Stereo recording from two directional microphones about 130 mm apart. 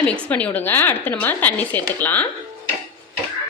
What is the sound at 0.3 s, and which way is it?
Speech, 10° left (ahead or behind).